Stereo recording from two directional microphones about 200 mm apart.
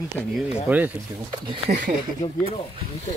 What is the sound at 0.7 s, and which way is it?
Speech, 10° right (ahead or behind).